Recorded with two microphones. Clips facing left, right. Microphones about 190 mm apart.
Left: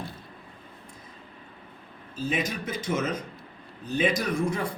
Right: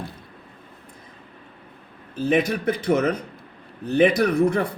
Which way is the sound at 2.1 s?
60° right (ahead or behind).